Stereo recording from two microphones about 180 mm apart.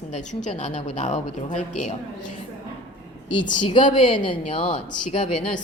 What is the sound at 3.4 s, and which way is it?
A woman's voice, 25° left (ahead or behind).